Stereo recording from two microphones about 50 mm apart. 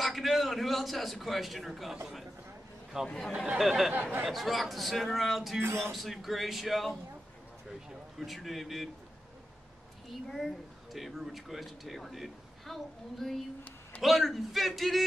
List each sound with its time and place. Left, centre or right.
0.0 s a man's voice: centre
3.9 s a sound: right
4.2 s speech: centre
5.6 s speech: right
5.9 s speech: centre
8.2 s speech: centre
10.0 s speech: centre